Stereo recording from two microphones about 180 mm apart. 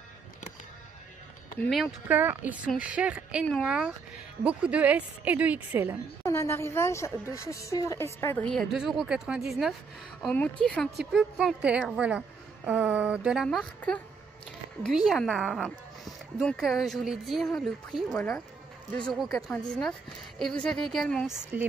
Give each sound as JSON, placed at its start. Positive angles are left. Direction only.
{"t": 1.6, "sound": "a woman's voice", "side_deg": 0}
{"t": 6.2, "sound": "a woman's voice", "side_deg": 15}
{"t": 8.5, "sound": "a woman's voice", "side_deg": 0}
{"t": 13.7, "sound": "a woman's voice", "side_deg": 10}
{"t": 15.0, "sound": "speech", "side_deg": 0}